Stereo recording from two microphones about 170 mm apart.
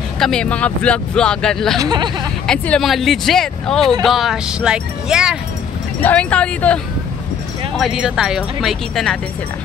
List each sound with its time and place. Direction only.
0.2 s speech: 5° left (ahead or behind)
1.8 s speech: 25° right (ahead or behind)
2.4 s speech: 5° left (ahead or behind)
6.0 s speech: 5° left (ahead or behind)